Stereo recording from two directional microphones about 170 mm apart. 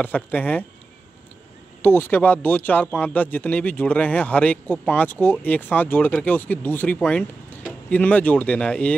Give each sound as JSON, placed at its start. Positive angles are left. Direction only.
{"t": 0.0, "sound": "speech", "side_deg": 10}
{"t": 1.8, "sound": "speech", "side_deg": 10}